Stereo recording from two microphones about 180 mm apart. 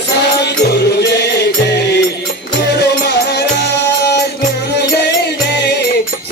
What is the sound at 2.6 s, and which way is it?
Music, 70° left (ahead or behind).